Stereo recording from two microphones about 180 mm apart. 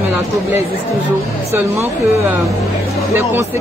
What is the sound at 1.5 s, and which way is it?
A woman's voice, 15° right (ahead or behind).